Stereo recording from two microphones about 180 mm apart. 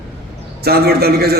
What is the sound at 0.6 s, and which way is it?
Speech, 60° right (ahead or behind).